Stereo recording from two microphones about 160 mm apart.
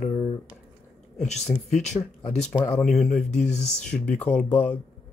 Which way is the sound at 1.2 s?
45° left (ahead or behind).